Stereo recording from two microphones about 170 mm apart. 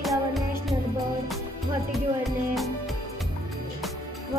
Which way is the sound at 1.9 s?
Centre (ahead or behind).